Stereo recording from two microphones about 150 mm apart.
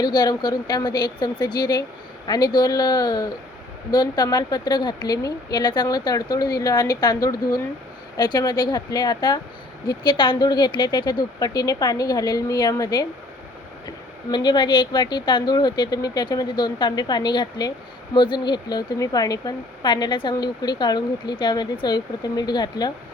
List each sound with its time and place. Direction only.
0.0 s speech: 30° left (ahead or behind)